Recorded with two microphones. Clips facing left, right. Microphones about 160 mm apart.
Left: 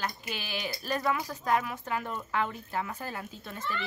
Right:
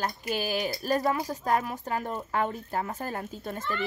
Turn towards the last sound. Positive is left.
turn(degrees=-45)  # may be behind; listen again after turning